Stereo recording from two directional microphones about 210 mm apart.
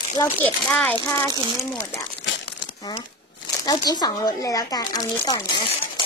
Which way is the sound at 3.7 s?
20° left (ahead or behind).